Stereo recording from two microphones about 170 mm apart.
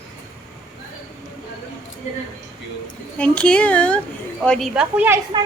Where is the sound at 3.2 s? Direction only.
5° left (ahead or behind).